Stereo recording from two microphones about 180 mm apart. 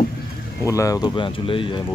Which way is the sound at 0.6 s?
15° left (ahead or behind).